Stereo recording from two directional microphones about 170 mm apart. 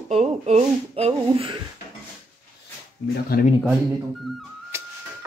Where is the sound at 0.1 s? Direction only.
40° right (ahead or behind).